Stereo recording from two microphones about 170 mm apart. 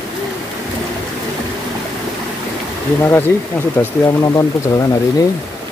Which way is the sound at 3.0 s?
15° left (ahead or behind).